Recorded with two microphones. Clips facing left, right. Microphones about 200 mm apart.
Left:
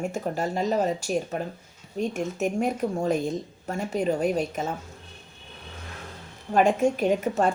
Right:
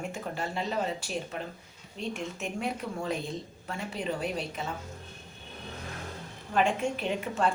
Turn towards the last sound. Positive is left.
turn(degrees=45)  # may be behind; listen again after turning